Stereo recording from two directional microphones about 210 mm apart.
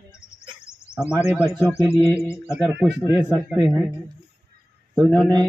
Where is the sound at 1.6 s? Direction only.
10° left (ahead or behind).